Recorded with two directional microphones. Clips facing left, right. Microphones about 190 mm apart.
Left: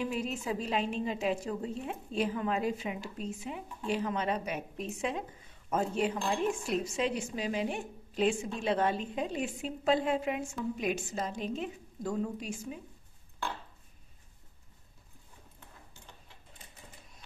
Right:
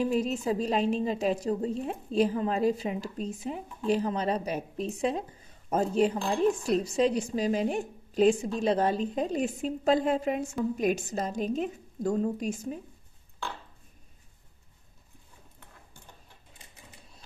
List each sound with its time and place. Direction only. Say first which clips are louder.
0.0 s a woman's voice: right 7 dB; 40° right (ahead or behind)